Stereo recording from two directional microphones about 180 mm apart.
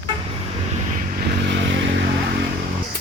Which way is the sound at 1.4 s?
85° right.